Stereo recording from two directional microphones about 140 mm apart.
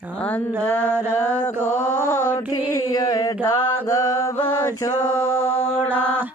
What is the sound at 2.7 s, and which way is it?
Music, 25° left (ahead or behind).